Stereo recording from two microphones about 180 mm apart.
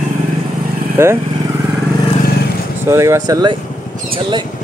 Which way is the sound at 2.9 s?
15° right (ahead or behind).